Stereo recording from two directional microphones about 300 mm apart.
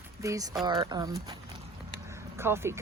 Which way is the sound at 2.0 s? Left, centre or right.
Centre.